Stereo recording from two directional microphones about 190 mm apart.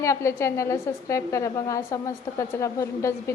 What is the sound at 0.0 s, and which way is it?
A woman's voice, 15° left (ahead or behind).